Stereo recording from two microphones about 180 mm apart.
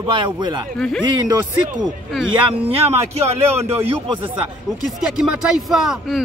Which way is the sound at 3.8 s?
30° right (ahead or behind).